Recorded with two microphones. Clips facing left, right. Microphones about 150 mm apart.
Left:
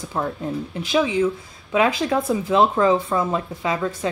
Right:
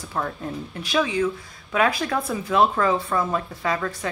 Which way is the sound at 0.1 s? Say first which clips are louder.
Left 3 dB; 20° left (ahead or behind).